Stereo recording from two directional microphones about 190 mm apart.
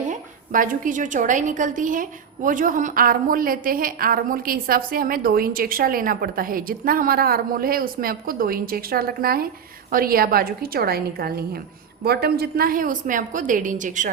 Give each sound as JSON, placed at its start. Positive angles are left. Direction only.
{"t": 0.1, "sound": "a woman's voice", "side_deg": -45}